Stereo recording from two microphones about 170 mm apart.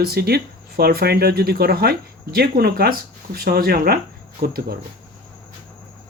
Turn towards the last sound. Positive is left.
turn(degrees=-65)  # may be behind; listen again after turning